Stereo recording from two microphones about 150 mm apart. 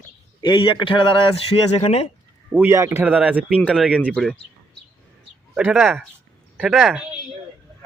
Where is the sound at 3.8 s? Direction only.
5° left (ahead or behind).